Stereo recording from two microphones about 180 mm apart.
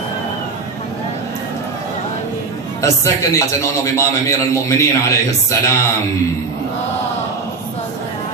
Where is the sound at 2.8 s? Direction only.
15° left (ahead or behind).